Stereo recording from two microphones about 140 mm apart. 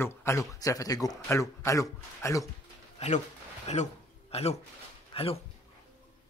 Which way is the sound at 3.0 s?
55° left (ahead or behind).